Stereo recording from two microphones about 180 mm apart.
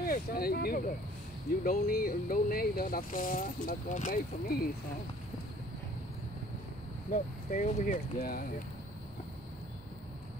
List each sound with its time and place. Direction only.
0.0 s speech: 55° left (ahead or behind)
7.1 s speech: 45° left (ahead or behind)